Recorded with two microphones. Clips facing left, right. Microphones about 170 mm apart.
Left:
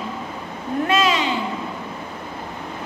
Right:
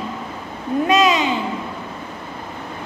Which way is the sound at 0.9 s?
20° right (ahead or behind).